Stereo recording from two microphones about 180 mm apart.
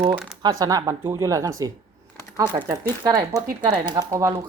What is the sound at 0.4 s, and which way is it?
Speech, 20° right (ahead or behind).